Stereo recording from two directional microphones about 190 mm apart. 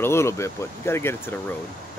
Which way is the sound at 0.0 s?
15° left (ahead or behind).